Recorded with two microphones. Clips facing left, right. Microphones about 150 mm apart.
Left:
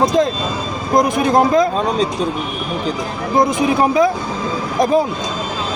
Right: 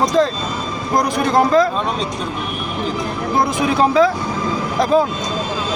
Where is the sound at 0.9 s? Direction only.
20° left (ahead or behind).